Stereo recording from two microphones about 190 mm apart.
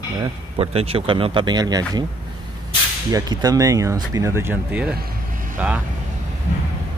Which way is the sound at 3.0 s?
20° right (ahead or behind).